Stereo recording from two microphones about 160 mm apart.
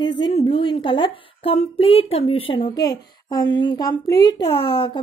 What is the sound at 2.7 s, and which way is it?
A child's voice, 25° left (ahead or behind).